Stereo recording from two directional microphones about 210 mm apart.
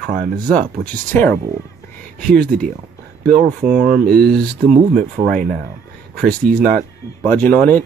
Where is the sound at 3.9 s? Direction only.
50° right (ahead or behind).